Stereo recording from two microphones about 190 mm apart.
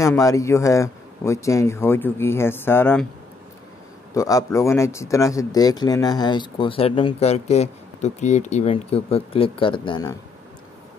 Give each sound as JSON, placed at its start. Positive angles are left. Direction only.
{"t": 0.0, "sound": "speech", "side_deg": 15}
{"t": 4.1, "sound": "speech", "side_deg": 15}